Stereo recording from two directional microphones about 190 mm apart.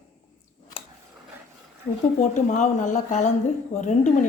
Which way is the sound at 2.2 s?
40° left (ahead or behind).